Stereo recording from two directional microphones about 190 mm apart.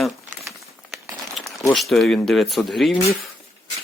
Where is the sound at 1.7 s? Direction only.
Centre (ahead or behind).